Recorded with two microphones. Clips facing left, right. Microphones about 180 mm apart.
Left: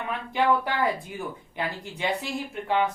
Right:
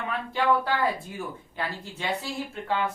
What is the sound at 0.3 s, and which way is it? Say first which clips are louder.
A woman's voice: left 1 dB; 15° left (ahead or behind).